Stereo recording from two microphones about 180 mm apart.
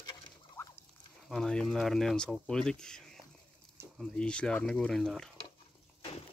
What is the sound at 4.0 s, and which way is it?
Speech, 5° left (ahead or behind).